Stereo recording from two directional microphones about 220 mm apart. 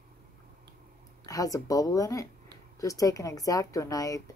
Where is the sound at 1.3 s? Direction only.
15° left (ahead or behind).